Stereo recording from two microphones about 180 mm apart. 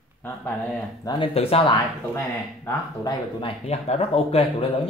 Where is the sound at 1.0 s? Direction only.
20° left (ahead or behind).